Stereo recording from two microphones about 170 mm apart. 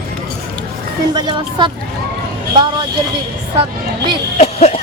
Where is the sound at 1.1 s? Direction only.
25° right (ahead or behind).